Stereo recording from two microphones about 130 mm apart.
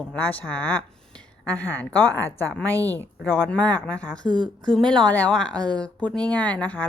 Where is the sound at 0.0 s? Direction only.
10° left (ahead or behind).